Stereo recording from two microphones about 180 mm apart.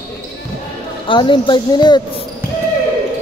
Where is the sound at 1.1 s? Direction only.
25° left (ahead or behind).